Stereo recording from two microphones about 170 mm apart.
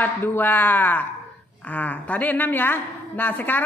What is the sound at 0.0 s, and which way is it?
A woman's voice, 10° left (ahead or behind).